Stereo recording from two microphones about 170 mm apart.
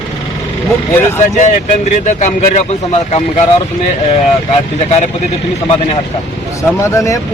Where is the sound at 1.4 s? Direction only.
45° left (ahead or behind).